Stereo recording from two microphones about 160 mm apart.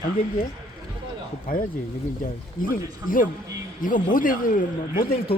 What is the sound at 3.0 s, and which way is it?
Speech, 60° left (ahead or behind).